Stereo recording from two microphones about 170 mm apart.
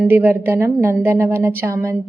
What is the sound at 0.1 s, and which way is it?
A woman's voice, 10° right (ahead or behind).